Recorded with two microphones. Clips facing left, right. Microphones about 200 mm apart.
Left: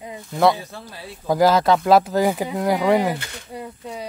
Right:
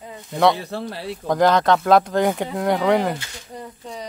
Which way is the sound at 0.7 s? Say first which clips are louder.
Right 10 dB; 70° right (ahead or behind).